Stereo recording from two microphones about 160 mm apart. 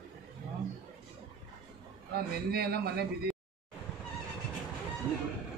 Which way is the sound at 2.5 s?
80° right.